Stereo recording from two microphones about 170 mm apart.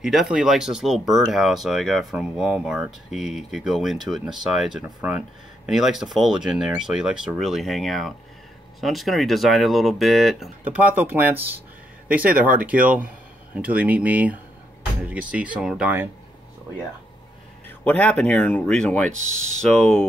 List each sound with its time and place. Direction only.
0.0 s speech: centre (ahead or behind)
17.6 s speech: 10° left (ahead or behind)
19.0 s speech: 45° right (ahead or behind)
19.6 s speech: 5° left (ahead or behind)